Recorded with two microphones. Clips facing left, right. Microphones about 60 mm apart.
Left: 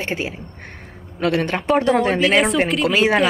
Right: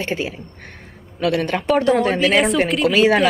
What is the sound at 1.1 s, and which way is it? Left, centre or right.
Speech, left.